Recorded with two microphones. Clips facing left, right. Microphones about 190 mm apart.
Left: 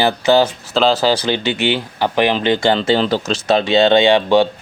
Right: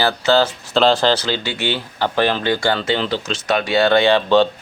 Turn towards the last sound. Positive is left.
turn(degrees=15)  # may be behind; listen again after turning